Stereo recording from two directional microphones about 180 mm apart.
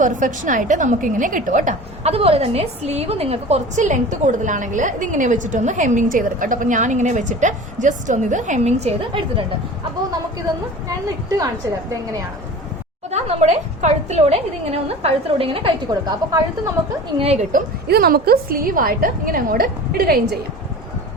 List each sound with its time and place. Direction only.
0.0 s a woman's voice: 45° right (ahead or behind)
11.3 s a woman's voice: 20° right (ahead or behind)
13.1 s a woman's voice: 35° right (ahead or behind); by 16.7 s 20° right (ahead or behind)
17.2 s a woman's voice: 35° right (ahead or behind)
17.5 s a woman's voice: 60° right (ahead or behind)